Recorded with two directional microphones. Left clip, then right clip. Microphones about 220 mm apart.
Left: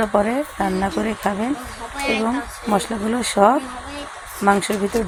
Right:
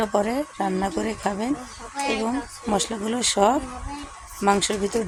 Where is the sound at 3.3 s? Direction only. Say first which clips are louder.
Left 6 dB; 5° left (ahead or behind).